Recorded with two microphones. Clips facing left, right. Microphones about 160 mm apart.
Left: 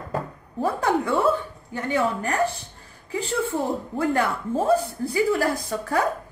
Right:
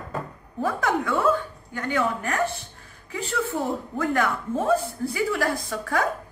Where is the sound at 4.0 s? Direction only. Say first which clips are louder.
Left 1 dB; 30° left (ahead or behind).